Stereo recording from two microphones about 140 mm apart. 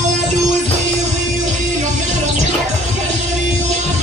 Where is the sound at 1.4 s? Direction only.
65° right (ahead or behind).